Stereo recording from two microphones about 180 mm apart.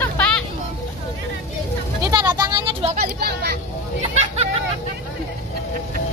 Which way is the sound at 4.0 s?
35° right (ahead or behind).